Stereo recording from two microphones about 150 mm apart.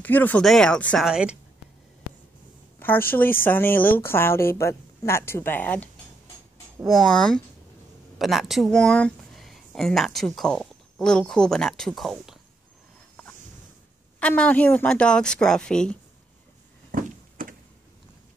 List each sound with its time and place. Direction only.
0.0 s speech: 10° left (ahead or behind)
1.0 s speech: 5° right (ahead or behind)
2.8 s speech: 15° left (ahead or behind)
6.8 s speech: centre (ahead or behind)
14.2 s speech: 10° left (ahead or behind)
16.9 s a sound: 65° right (ahead or behind)